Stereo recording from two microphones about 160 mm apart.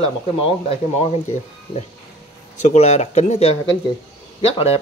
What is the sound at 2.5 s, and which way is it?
Speech, 45° left (ahead or behind).